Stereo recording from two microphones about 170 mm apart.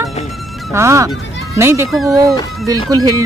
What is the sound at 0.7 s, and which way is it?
Speech, 15° right (ahead or behind).